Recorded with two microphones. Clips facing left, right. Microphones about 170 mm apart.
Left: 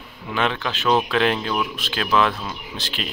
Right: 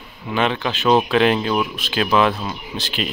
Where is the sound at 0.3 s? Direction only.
5° right (ahead or behind).